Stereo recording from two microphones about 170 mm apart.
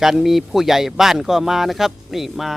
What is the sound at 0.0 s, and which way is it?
Speech, centre (ahead or behind).